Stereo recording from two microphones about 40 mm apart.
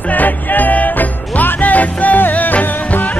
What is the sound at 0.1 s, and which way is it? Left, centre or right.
Music, left.